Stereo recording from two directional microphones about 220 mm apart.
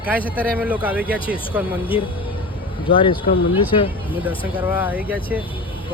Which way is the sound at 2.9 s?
20° left (ahead or behind).